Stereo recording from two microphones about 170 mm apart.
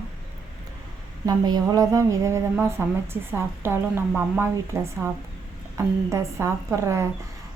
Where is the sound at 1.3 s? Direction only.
25° right (ahead or behind).